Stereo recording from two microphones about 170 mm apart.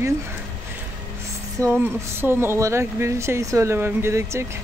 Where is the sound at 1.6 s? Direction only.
15° right (ahead or behind).